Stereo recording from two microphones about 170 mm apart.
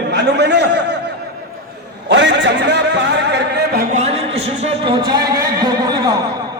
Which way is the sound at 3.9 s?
40° right (ahead or behind).